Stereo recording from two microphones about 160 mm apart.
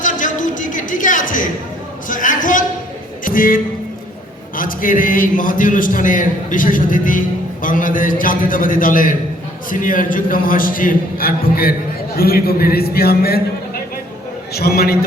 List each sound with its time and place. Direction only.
0.0 s a sound: 55° left (ahead or behind)
3.2 s a man's voice: 60° left (ahead or behind)
14.5 s a man's voice: 80° left